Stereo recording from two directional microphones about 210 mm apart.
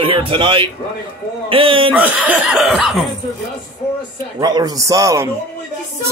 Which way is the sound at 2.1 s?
5° right (ahead or behind).